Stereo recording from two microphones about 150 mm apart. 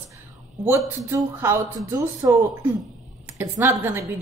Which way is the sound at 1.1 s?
15° right (ahead or behind).